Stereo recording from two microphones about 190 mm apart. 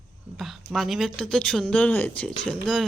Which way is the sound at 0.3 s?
Centre (ahead or behind).